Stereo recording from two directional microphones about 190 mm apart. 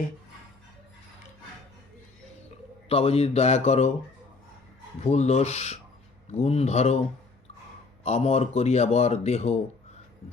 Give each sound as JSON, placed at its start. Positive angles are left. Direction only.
{"t": 2.9, "sound": "speech", "side_deg": 30}
{"t": 5.0, "sound": "speech", "side_deg": 35}
{"t": 8.0, "sound": "speech", "side_deg": 35}